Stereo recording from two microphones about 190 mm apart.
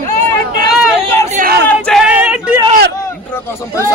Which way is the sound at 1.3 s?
50° right (ahead or behind).